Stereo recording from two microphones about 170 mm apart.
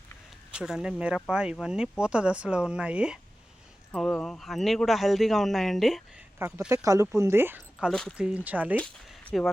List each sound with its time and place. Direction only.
0.5 s speech: 5° right (ahead or behind)
3.9 s speech: 5° left (ahead or behind); by 7.9 s 10° right (ahead or behind)
7.9 s speech: centre (ahead or behind)
8.7 s speech: 10° left (ahead or behind)